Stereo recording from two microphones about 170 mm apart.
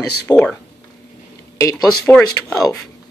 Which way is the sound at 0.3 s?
5° left (ahead or behind).